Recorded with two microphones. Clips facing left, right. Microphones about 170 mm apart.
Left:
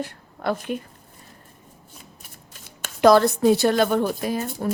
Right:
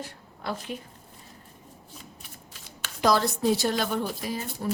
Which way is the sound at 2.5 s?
55° left (ahead or behind).